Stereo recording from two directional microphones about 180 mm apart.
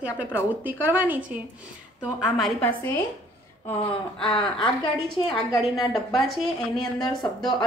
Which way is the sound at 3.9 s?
30° left (ahead or behind).